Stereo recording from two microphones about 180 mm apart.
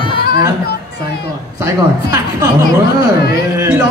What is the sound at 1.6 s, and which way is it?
Speech, 20° right (ahead or behind).